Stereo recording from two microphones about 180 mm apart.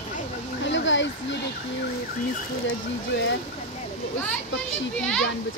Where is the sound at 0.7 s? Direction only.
90° left.